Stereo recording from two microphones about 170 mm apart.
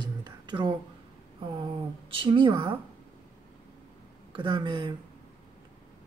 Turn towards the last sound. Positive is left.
turn(degrees=-30)  # may be behind; listen again after turning